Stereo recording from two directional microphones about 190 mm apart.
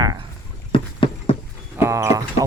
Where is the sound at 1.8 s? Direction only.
15° right (ahead or behind).